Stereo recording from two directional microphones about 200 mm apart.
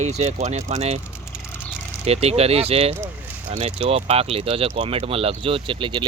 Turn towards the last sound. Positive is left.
turn(degrees=-25)  # may be behind; listen again after turning